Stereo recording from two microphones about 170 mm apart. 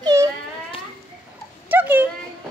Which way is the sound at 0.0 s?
20° right (ahead or behind).